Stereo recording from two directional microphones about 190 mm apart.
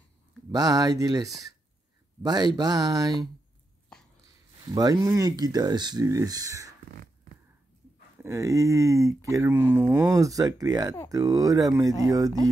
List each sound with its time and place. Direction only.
0.5 s speech: 20° right (ahead or behind)
3.9 s a sound: 5° left (ahead or behind)
4.7 s speech: 20° right (ahead or behind)
8.2 s speech: 15° right (ahead or behind)